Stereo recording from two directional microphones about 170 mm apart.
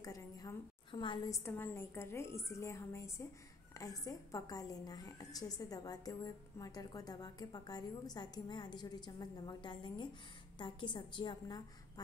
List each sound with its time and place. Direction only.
0.0 s a woman's voice: 20° left (ahead or behind)
1.3 s a woman's voice: 15° left (ahead or behind)